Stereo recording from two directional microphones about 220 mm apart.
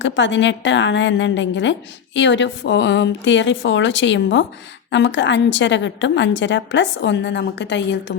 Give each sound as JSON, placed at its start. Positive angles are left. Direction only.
{"t": 0.0, "sound": "a woman's voice", "side_deg": 55}